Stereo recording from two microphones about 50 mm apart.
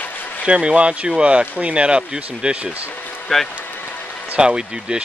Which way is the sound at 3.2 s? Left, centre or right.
Centre.